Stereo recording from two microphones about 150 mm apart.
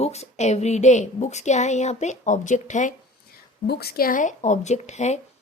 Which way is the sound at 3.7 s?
90° left.